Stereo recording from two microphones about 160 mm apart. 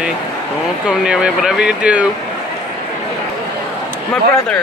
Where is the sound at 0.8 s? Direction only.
5° right (ahead or behind).